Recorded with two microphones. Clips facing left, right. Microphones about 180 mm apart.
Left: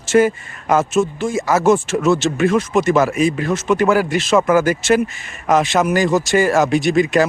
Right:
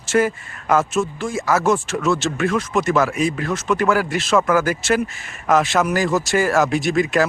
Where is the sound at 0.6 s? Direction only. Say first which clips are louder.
Left 3 dB; 20° left (ahead or behind).